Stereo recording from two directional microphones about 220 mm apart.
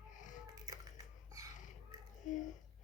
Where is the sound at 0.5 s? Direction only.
15° right (ahead or behind).